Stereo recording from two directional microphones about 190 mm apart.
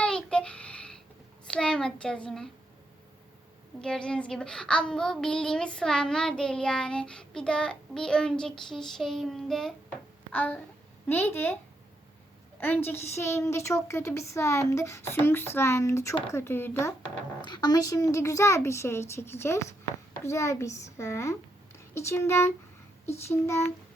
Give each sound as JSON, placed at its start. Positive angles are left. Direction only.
{"t": 0.0, "sound": "a sound", "side_deg": 5}
{"t": 1.5, "sound": "a woman's voice", "side_deg": 5}
{"t": 3.8, "sound": "a child's voice", "side_deg": 5}
{"t": 12.5, "sound": "a woman's voice", "side_deg": 10}
{"t": 17.4, "sound": "a woman's voice", "side_deg": 20}